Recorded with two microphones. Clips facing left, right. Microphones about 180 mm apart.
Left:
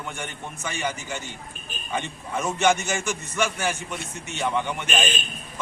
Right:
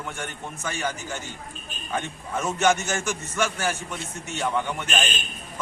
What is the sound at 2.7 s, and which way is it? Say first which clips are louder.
Speech: even; 15° left (ahead or behind).